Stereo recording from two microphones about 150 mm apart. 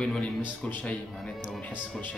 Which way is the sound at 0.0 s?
5° left (ahead or behind).